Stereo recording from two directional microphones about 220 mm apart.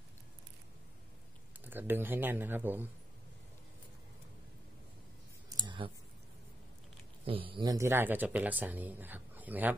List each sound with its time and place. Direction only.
1.6 s speech: 10° right (ahead or behind)
5.5 s clicking: 20° right (ahead or behind)
7.2 s speech: 25° right (ahead or behind); by 9.8 s 10° right (ahead or behind)